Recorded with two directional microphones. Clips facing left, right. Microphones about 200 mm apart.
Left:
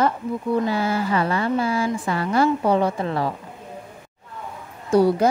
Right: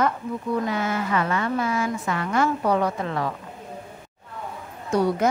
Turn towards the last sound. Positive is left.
turn(degrees=30)  # may be behind; listen again after turning